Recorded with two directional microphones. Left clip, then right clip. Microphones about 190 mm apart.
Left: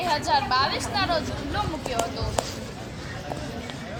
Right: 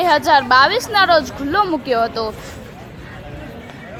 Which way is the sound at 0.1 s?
45° right (ahead or behind).